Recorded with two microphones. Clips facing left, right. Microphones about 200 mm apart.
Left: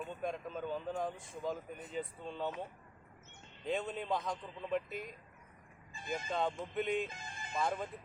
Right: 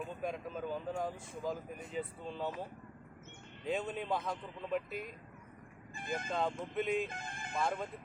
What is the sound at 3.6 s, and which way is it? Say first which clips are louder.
Speech: even; centre (ahead or behind).